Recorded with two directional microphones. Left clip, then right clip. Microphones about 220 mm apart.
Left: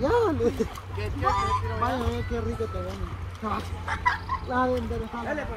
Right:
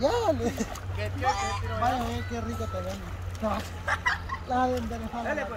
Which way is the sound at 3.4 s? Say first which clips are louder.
Right 1 dB; 30° right (ahead or behind).